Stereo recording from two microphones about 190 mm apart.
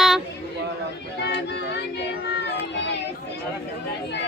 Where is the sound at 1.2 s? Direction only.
65° left (ahead or behind).